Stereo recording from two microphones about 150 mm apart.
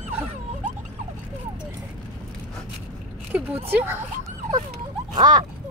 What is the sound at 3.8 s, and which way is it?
Speech, 15° right (ahead or behind).